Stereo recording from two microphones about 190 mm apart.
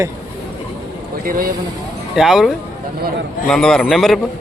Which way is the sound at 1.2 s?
45° right (ahead or behind).